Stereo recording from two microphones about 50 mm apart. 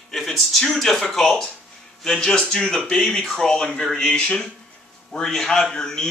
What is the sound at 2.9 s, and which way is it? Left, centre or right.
Speech, centre.